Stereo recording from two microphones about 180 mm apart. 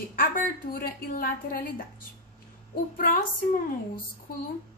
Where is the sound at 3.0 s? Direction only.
55° left (ahead or behind).